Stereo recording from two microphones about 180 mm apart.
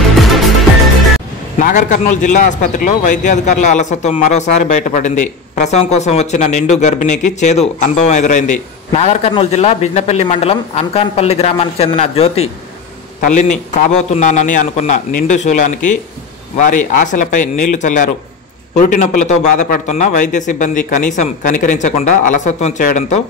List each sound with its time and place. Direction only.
0.1 s music: centre (ahead or behind)
1.6 s a man's voice: 45° left (ahead or behind)